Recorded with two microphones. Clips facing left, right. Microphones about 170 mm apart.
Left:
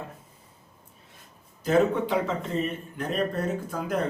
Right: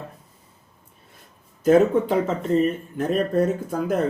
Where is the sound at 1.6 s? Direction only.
45° right (ahead or behind).